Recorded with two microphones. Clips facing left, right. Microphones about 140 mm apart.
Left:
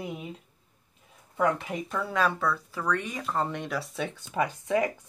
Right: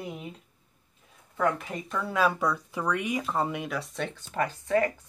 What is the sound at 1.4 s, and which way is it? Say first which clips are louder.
Speech: left 1 dB; 5° left (ahead or behind).